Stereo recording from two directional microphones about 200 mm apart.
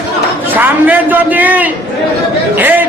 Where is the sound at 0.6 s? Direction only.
10° right (ahead or behind).